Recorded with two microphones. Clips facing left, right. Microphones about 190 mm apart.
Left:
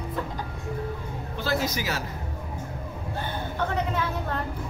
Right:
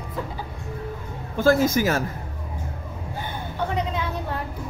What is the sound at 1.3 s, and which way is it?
Speech, 50° right (ahead or behind).